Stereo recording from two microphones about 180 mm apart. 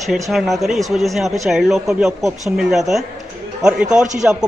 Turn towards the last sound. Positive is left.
turn(degrees=-5)  # may be behind; listen again after turning